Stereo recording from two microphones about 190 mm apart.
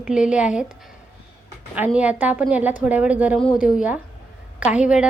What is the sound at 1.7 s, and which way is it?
A woman's voice, 10° right (ahead or behind).